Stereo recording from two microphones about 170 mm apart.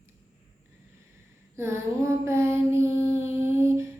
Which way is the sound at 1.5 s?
15° right (ahead or behind).